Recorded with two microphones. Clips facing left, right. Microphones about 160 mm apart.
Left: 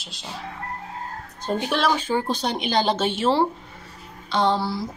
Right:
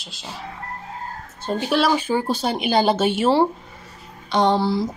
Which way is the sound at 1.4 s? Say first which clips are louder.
Right 3 dB; 5° right (ahead or behind).